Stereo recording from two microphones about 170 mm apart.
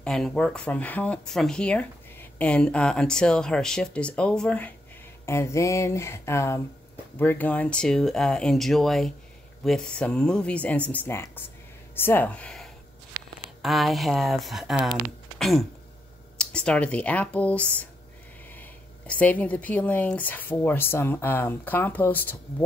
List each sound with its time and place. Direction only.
0.0 s speech: 5° left (ahead or behind)